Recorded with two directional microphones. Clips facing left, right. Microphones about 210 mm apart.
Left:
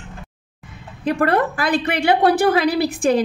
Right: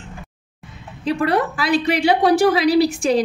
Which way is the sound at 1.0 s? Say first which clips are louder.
Left 1 dB; 55° left (ahead or behind).